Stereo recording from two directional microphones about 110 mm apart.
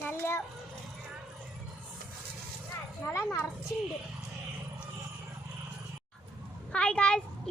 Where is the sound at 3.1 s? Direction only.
25° left (ahead or behind).